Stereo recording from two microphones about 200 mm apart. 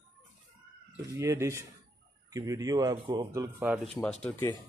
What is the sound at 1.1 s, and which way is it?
Speech, 15° right (ahead or behind).